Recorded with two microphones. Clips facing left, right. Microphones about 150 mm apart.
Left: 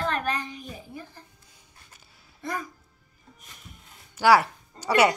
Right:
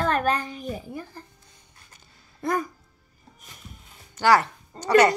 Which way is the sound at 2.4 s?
50° right (ahead or behind).